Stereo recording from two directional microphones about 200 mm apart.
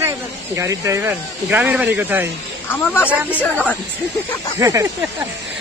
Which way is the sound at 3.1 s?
10° right (ahead or behind).